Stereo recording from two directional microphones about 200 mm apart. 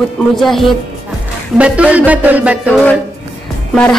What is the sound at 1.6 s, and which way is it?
Music, 5° right (ahead or behind).